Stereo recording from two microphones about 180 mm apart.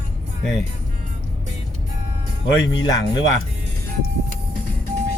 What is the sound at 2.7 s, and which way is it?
Speech, 20° left (ahead or behind).